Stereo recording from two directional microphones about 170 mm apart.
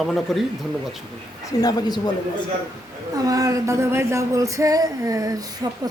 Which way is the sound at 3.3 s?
20° right (ahead or behind).